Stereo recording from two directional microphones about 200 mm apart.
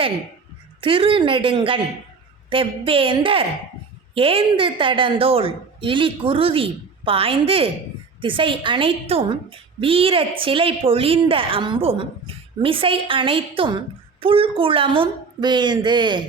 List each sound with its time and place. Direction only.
0.8 s a woman's voice: 25° right (ahead or behind)